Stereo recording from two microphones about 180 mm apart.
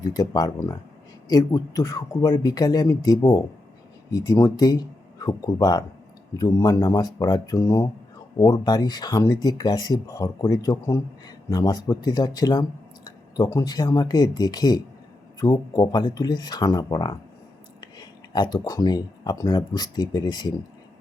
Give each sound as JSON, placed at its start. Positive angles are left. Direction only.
{"t": 0.0, "sound": "speech", "side_deg": 20}